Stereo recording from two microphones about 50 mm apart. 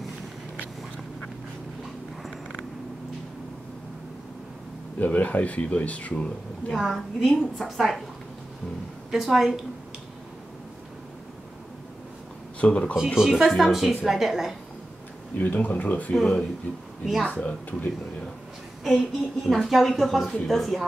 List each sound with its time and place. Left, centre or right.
4.9 s speech: left
6.7 s a woman's voice: centre
9.1 s a woman's voice: centre
12.5 s speech: left
12.9 s a woman's voice: centre
15.3 s speech: left
16.2 s speech: centre
17.0 s speech: centre
17.3 s speech: left
19.4 s a woman's voice: centre